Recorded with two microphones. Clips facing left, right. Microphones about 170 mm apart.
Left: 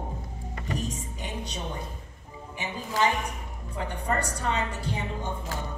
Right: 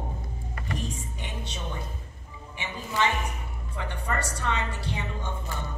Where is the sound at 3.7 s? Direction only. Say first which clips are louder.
Left 3 dB; 35° left (ahead or behind).